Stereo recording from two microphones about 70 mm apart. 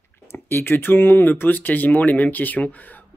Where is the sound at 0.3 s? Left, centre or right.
Left.